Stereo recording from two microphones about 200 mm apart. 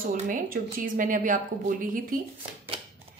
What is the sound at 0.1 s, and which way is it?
A woman's voice, 45° right (ahead or behind).